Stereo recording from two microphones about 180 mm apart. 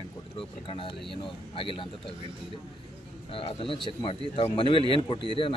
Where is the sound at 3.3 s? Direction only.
30° left (ahead or behind).